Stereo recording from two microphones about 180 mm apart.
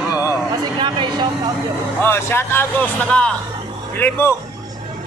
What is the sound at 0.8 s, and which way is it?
Speech, 25° right (ahead or behind).